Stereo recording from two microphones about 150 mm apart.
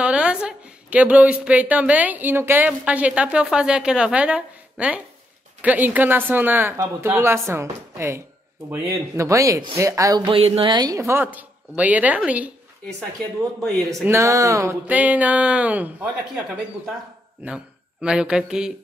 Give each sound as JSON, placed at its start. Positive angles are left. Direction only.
{"t": 0.0, "sound": "a woman's voice", "side_deg": -10}
{"t": 14.0, "sound": "a woman's voice", "side_deg": -20}
{"t": 18.0, "sound": "speech", "side_deg": -5}